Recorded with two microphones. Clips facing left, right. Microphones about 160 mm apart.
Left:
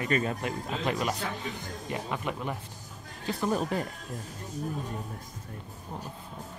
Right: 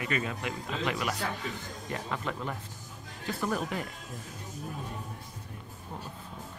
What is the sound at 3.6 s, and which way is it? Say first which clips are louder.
Speech: left 4 dB; 35° left (ahead or behind).